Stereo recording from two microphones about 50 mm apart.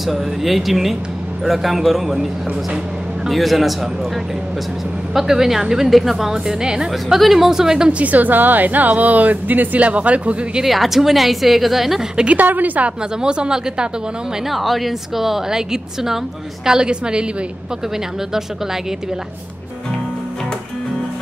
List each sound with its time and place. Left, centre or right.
0.0 s a woman's voice: centre
3.3 s a woman's voice: centre
5.1 s a woman's voice: centre
6.3 s a woman's voice: centre
6.9 s a woman's voice: centre
8.0 s a woman's voice: right
10.6 s a woman's voice: centre
12.4 s a woman's voice: right
13.2 s a woman's voice: centre
14.5 s a woman's voice: centre